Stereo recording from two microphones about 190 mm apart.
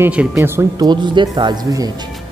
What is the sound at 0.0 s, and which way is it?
Speech, 5° right (ahead or behind).